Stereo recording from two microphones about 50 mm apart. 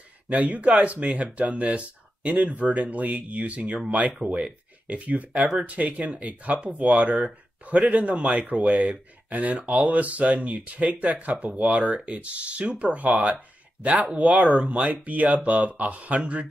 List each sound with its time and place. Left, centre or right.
0.3 s speech: right